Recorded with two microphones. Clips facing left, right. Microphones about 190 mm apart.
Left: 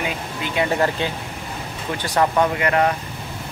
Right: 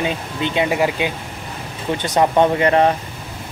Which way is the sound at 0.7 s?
10° right (ahead or behind).